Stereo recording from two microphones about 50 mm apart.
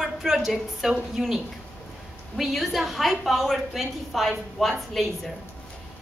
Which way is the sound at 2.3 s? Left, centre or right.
Centre.